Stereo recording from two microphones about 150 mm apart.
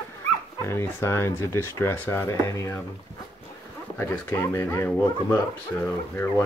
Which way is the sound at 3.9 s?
15° left (ahead or behind).